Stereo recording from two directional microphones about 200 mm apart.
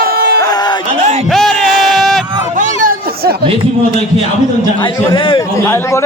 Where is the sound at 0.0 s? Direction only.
50° right (ahead or behind).